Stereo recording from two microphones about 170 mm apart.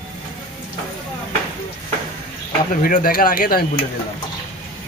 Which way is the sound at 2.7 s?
55° left (ahead or behind).